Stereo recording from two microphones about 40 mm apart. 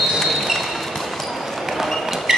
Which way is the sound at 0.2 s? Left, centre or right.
Centre.